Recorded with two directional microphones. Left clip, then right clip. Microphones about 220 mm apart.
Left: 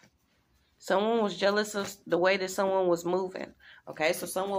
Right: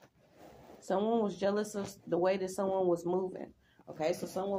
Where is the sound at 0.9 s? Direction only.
10° right (ahead or behind).